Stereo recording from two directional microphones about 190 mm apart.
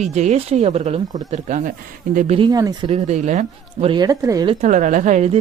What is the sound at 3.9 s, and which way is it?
Speech, 20° right (ahead or behind).